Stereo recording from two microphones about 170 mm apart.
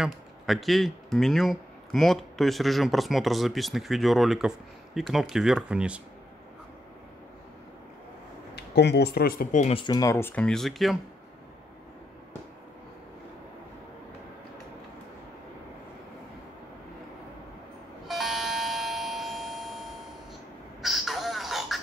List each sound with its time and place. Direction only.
0.0 s speech: centre (ahead or behind)
8.5 s speech: 75° left (ahead or behind); by 9.8 s 45° left (ahead or behind)
9.8 s speech: 25° left (ahead or behind); by 11.0 s centre (ahead or behind)
18.0 s doorbell: centre (ahead or behind)
20.8 s music: centre (ahead or behind)